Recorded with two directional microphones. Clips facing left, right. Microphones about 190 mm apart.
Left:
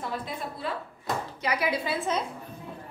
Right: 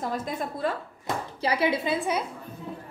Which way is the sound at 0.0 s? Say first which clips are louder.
Right 4 dB; 45° right (ahead or behind).